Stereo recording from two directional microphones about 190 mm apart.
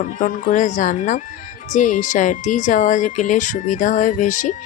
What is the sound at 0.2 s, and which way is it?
A woman's voice, 40° left (ahead or behind).